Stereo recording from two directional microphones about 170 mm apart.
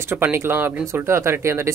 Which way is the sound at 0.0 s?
15° right (ahead or behind).